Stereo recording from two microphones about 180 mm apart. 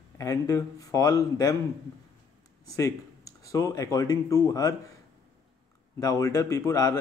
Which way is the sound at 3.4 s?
20° left (ahead or behind).